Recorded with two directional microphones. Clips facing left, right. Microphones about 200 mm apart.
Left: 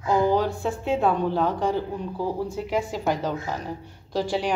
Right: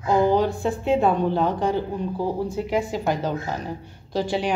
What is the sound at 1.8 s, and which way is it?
Speech, 20° right (ahead or behind).